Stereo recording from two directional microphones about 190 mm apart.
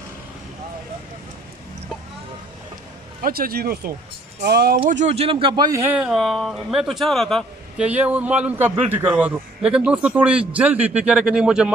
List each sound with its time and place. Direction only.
3.2 s speech: 50° right (ahead or behind)
4.8 s speech: 40° right (ahead or behind); by 11.7 s 5° right (ahead or behind)